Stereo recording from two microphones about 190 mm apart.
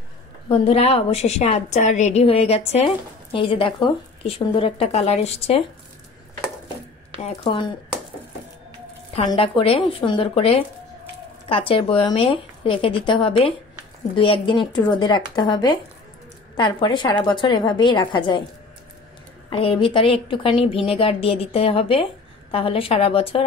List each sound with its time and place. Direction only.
0.5 s a woman's voice: 30° left (ahead or behind)
9.2 s speech: 30° left (ahead or behind)
19.5 s speech: 30° left (ahead or behind)